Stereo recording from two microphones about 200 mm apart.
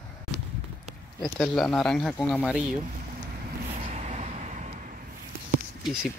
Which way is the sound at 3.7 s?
30° right (ahead or behind).